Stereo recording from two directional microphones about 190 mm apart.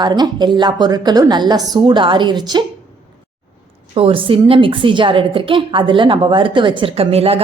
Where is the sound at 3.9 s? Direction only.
30° right (ahead or behind).